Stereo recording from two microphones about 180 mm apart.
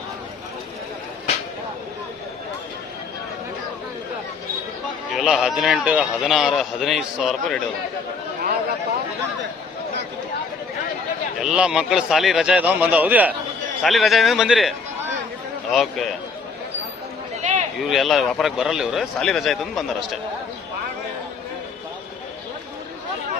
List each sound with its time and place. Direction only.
5.1 s a man's voice: centre (ahead or behind)
11.3 s a man's voice: 5° right (ahead or behind)
15.7 s a man's voice: centre (ahead or behind)
17.4 s a sound: 45° right (ahead or behind)
17.7 s a man's voice: centre (ahead or behind)